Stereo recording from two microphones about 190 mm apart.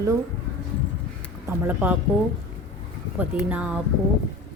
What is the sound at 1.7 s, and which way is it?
Speech, 10° right (ahead or behind).